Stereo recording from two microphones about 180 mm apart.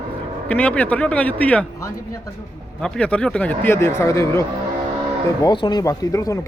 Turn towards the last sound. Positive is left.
turn(degrees=20)  # may be behind; listen again after turning